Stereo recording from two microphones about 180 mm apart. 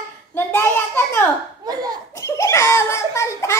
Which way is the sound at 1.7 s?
20° right (ahead or behind).